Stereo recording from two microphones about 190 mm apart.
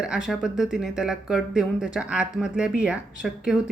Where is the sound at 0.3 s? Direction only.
Centre (ahead or behind).